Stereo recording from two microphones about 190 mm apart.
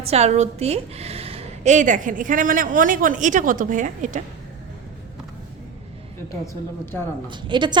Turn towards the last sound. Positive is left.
turn(degrees=-25)  # may be behind; listen again after turning